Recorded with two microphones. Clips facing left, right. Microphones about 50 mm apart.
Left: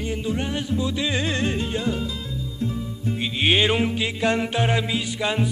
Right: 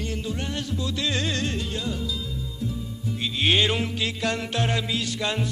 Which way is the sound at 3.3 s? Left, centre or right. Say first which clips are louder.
Left 2 dB; centre.